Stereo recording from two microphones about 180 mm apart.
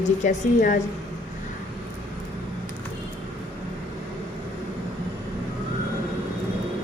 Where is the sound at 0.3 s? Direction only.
45° left (ahead or behind).